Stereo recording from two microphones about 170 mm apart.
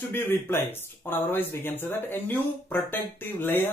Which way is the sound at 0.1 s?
15° left (ahead or behind).